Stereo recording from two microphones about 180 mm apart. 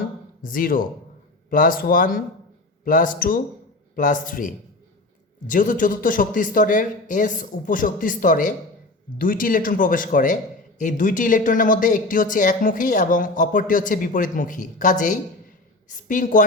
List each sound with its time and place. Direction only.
0.4 s speech: 50° left (ahead or behind)